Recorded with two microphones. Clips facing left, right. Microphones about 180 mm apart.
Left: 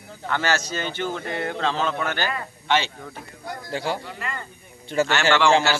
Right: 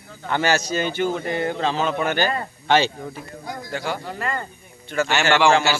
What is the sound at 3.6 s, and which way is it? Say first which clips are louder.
Speech: left 1 dB; 30° left (ahead or behind).